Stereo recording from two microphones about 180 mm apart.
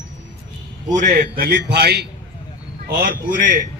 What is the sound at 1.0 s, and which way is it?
Speech, 50° right (ahead or behind).